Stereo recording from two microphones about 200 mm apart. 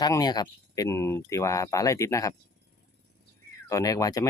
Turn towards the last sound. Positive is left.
turn(degrees=20)  # may be behind; listen again after turning